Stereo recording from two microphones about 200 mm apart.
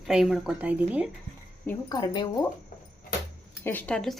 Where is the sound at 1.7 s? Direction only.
20° left (ahead or behind).